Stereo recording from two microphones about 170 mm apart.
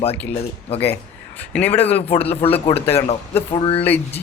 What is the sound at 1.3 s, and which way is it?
Speech, 10° left (ahead or behind).